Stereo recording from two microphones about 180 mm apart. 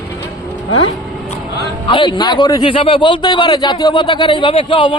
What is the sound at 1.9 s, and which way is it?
A man's voice, 25° left (ahead or behind).